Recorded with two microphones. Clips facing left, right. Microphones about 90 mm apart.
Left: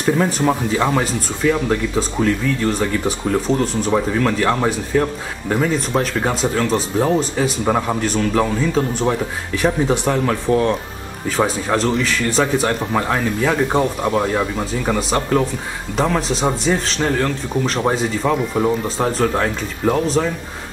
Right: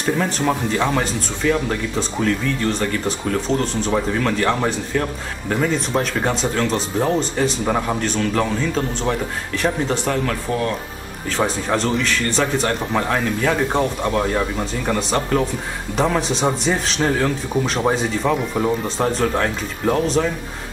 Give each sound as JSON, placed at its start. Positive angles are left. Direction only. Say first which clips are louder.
{"t": 0.0, "sound": "speech", "louder": "left 3 dB", "side_deg": 5}
{"t": 11.2, "sound": "speech", "louder": "left 2 dB", "side_deg": 5}